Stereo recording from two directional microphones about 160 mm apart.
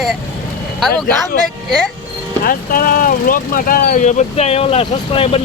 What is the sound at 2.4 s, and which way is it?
Speech, 65° left (ahead or behind).